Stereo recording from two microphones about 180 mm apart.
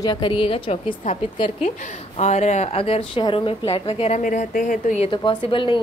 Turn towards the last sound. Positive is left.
turn(degrees=30)  # may be behind; listen again after turning